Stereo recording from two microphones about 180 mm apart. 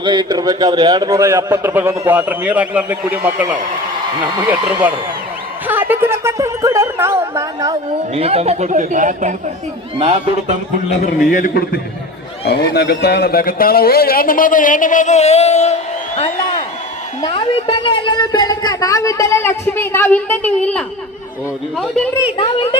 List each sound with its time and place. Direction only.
0.0 s a man's voice: 25° right (ahead or behind)
5.6 s music: 10° right (ahead or behind)
8.1 s speech: 35° right (ahead or behind)
11.3 s a man's voice: 55° left (ahead or behind); by 15.7 s 35° left (ahead or behind)
16.1 s a sound: 35° left (ahead or behind)
17.2 s speech: 30° left (ahead or behind); by 20.8 s 5° left (ahead or behind)
22.4 s speech: 30° left (ahead or behind)